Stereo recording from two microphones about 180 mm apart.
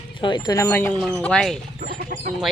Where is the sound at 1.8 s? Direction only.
40° right (ahead or behind).